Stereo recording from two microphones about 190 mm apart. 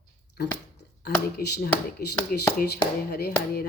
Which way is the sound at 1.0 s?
55° left (ahead or behind).